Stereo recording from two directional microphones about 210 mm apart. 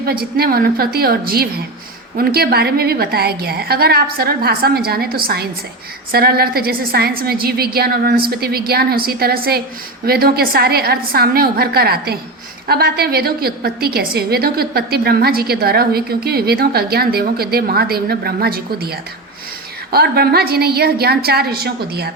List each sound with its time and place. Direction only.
0.0 s a woman's voice: 45° right (ahead or behind)